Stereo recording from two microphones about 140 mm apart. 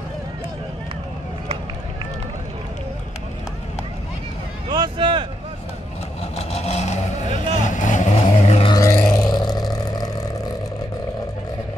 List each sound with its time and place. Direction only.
4.6 s a sound: 35° right (ahead or behind)
6.3 s vehicle: 50° left (ahead or behind)
7.6 s vehicle: 65° left (ahead or behind)
8.6 s music: 25° left (ahead or behind)
9.1 s vehicle: 30° left (ahead or behind)